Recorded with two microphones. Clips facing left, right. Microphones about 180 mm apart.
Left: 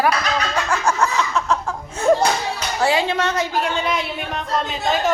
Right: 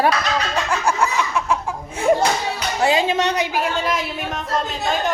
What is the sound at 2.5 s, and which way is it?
A woman's voice, 20° right (ahead or behind).